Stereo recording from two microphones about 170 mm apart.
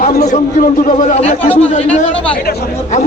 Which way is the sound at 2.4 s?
70° left (ahead or behind).